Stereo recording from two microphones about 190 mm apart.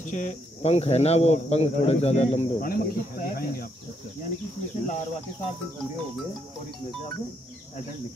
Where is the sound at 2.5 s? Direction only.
50° left (ahead or behind).